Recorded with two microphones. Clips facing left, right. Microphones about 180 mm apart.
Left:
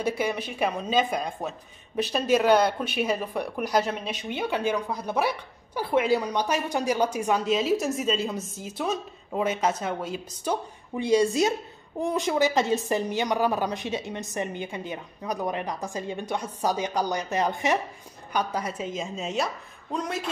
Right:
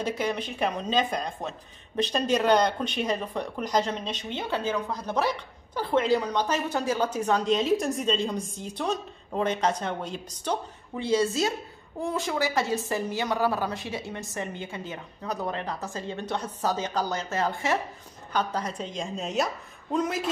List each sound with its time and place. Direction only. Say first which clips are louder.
0.0 s a woman's voice: left 1 dB; 10° left (ahead or behind)